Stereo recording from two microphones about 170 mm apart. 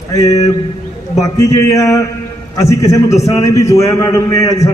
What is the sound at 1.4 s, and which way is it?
A man's voice, 20° left (ahead or behind).